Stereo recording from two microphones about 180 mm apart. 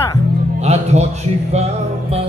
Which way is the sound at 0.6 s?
35° right (ahead or behind).